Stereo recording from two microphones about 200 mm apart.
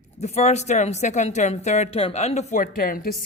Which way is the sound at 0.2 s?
35° left (ahead or behind).